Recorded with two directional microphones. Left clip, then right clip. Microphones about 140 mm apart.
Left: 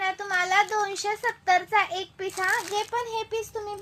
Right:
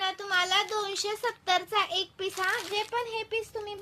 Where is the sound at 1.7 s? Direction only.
55° right (ahead or behind).